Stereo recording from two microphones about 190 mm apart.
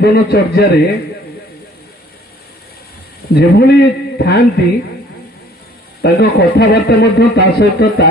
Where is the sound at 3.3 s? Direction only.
60° left (ahead or behind).